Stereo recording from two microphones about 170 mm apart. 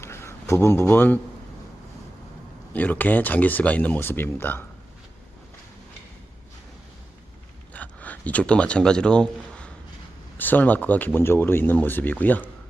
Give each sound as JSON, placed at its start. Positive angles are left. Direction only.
{"t": 0.0, "sound": "a sound", "side_deg": 15}
{"t": 2.7, "sound": "speech", "side_deg": 10}
{"t": 7.7, "sound": "speech", "side_deg": 10}